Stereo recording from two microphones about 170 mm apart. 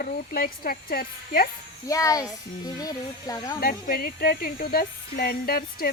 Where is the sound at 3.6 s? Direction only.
60° left (ahead or behind).